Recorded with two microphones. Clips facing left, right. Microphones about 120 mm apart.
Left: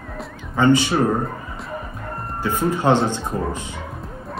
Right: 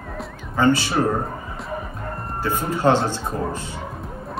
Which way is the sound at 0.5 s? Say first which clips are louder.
Left 2 dB; 20° left (ahead or behind).